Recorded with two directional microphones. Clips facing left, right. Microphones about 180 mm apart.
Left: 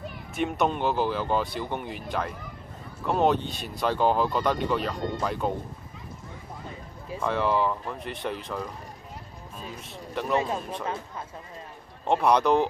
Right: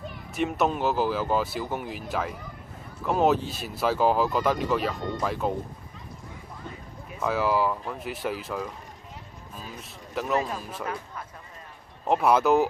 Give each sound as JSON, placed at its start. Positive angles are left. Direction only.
{"t": 0.3, "sound": "speech", "side_deg": 0}
{"t": 7.2, "sound": "speech", "side_deg": -5}
{"t": 10.3, "sound": "speech", "side_deg": 25}
{"t": 10.6, "sound": "speech", "side_deg": -5}
{"t": 12.0, "sound": "speech", "side_deg": -5}